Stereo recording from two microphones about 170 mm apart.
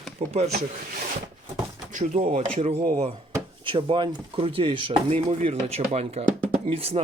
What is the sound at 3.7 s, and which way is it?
Speech, 30° right (ahead or behind).